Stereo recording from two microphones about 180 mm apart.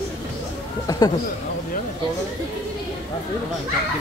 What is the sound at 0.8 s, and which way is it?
Speech, 20° left (ahead or behind).